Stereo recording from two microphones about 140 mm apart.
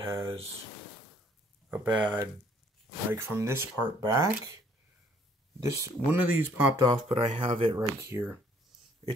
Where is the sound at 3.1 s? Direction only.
20° right (ahead or behind).